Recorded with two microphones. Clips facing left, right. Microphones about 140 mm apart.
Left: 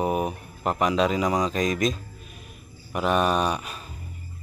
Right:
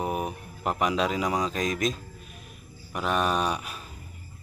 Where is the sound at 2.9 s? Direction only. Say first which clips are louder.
Left 4 dB; 5° left (ahead or behind).